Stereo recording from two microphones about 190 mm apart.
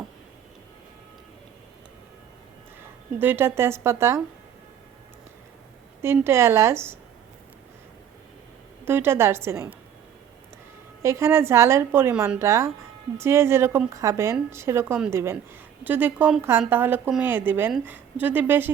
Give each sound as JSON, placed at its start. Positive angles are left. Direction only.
{"t": 3.2, "sound": "a woman's voice", "side_deg": -10}
{"t": 6.0, "sound": "a woman's voice", "side_deg": -15}
{"t": 8.8, "sound": "a woman's voice", "side_deg": -10}
{"t": 11.0, "sound": "a woman's voice", "side_deg": -15}